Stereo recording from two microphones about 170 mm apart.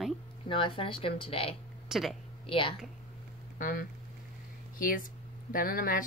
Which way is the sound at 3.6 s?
55° left (ahead or behind).